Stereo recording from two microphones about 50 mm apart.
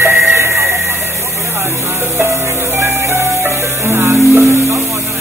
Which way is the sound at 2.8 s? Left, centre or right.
Right.